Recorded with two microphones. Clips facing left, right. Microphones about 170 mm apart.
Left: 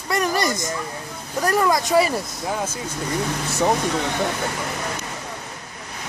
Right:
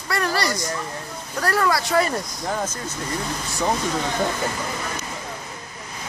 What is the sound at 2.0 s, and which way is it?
Speech, 5° left (ahead or behind).